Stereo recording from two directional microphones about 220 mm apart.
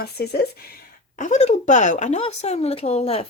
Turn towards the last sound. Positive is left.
turn(degrees=30)  # may be behind; listen again after turning